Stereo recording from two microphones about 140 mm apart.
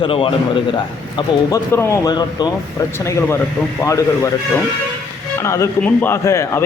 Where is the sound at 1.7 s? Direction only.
20° left (ahead or behind).